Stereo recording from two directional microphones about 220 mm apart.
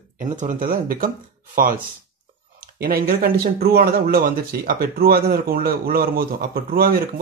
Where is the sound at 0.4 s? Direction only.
35° right (ahead or behind).